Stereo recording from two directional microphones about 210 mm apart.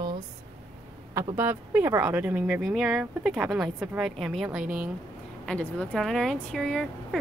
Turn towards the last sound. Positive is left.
turn(degrees=5)  # may be behind; listen again after turning